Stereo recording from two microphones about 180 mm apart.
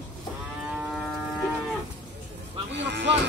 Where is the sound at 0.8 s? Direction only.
Centre (ahead or behind).